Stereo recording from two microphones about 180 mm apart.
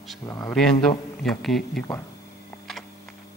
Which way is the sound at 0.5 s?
5° left (ahead or behind).